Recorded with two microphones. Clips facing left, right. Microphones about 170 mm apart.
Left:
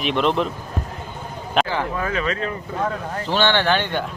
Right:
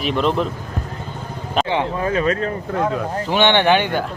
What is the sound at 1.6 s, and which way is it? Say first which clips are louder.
Speech: right 4 dB; 25° right (ahead or behind).